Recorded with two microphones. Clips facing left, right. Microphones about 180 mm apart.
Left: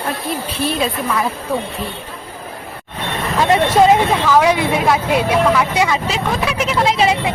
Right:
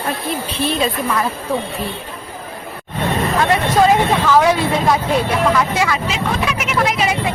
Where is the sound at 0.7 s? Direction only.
5° left (ahead or behind).